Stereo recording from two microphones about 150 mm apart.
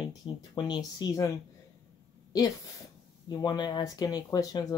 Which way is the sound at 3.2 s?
30° left (ahead or behind).